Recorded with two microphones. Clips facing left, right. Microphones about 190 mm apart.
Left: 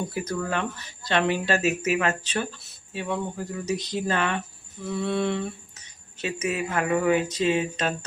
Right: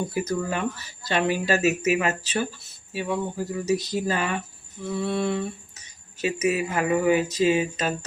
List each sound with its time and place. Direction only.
0.1 s speech: 10° right (ahead or behind)